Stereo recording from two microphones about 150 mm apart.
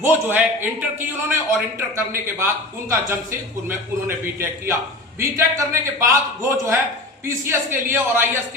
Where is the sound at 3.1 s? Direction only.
15° right (ahead or behind).